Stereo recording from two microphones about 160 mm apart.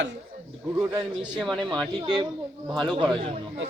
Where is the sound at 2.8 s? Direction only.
30° right (ahead or behind).